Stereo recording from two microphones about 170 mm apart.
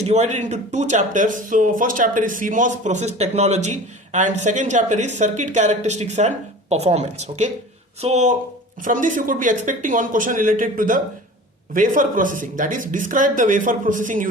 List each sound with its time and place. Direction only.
0.0 s speech: 40° right (ahead or behind)